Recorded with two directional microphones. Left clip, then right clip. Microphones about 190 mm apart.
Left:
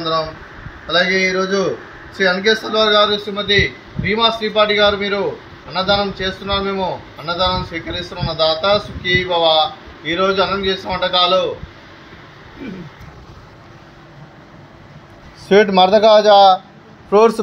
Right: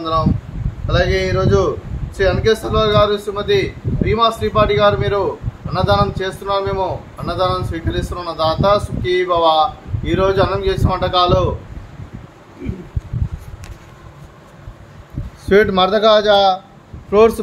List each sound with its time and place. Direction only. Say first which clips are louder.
0.8 s a sound: left 2 dB; 15° right (ahead or behind)
2.1 s a man's voice: even; 20° right (ahead or behind)
15.4 s a man's voice: left 2 dB; centre (ahead or behind)